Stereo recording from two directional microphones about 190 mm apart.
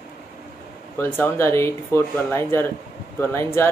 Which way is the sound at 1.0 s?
10° left (ahead or behind).